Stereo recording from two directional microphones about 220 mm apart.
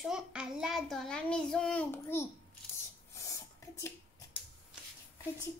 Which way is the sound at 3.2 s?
15° left (ahead or behind).